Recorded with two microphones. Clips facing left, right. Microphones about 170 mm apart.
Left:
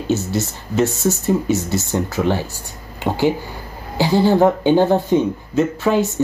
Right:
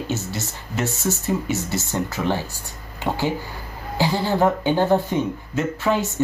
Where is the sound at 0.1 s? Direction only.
15° left (ahead or behind).